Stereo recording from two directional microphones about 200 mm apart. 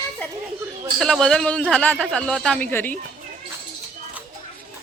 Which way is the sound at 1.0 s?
Centre (ahead or behind).